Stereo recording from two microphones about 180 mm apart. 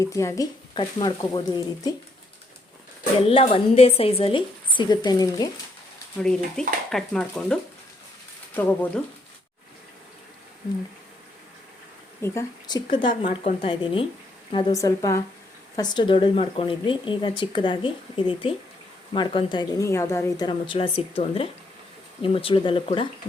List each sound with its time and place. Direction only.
0.0 s speech: 15° left (ahead or behind)
3.2 s speech: 30° left (ahead or behind)
6.1 s a woman's voice: 5° left (ahead or behind)
12.2 s speech: 15° left (ahead or behind)
14.5 s a woman's voice: 20° left (ahead or behind)